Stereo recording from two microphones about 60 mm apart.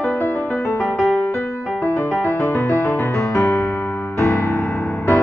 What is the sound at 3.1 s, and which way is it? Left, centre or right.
Music, left.